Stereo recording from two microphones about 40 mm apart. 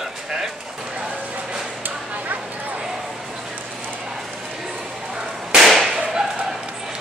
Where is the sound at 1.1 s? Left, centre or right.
Right.